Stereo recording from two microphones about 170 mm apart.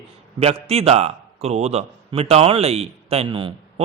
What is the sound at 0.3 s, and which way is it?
A man's voice, 35° right (ahead or behind).